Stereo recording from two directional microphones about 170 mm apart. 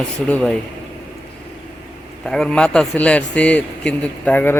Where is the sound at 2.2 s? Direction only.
5° left (ahead or behind).